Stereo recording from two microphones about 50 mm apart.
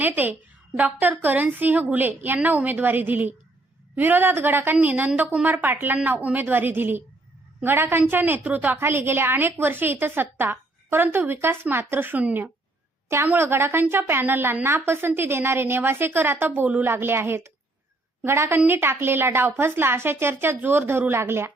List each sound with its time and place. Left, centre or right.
0.0 s a woman's voice: right
4.8 s a woman's voice: right
5.5 s a woman's voice: right
8.8 s a woman's voice: right
13.3 s a woman's voice: right
16.8 s a woman's voice: right